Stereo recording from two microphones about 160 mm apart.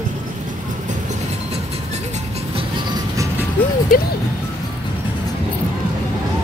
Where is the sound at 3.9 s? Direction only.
60° left (ahead or behind).